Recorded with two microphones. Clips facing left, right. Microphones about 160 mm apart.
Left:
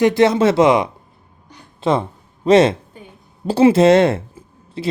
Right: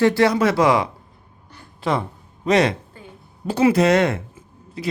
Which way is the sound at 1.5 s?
25° left (ahead or behind).